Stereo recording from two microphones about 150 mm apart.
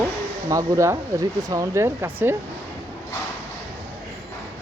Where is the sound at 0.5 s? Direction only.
20° right (ahead or behind).